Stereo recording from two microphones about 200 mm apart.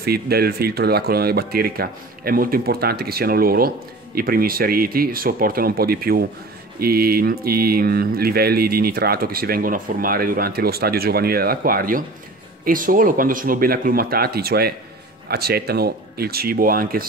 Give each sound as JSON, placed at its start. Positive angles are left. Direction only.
{"t": 0.0, "sound": "speech", "side_deg": -50}